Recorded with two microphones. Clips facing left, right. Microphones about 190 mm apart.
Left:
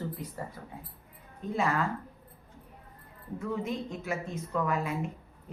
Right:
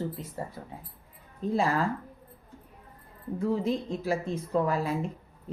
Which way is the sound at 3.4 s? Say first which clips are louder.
Right 5 dB; 35° right (ahead or behind).